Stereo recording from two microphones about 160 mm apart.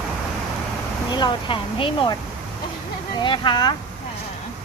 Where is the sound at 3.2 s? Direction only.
30° left (ahead or behind).